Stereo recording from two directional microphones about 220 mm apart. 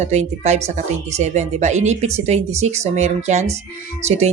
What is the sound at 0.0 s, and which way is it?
Speech, 30° right (ahead or behind).